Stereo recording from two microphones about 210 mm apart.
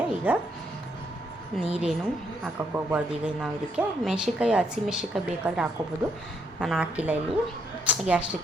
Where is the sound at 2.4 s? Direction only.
5° right (ahead or behind).